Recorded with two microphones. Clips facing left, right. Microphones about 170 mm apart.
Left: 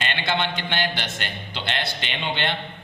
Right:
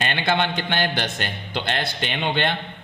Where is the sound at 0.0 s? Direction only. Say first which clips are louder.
Right 3 dB; 50° right (ahead or behind).